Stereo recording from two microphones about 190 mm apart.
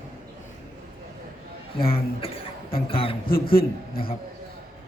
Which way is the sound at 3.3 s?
50° left (ahead or behind).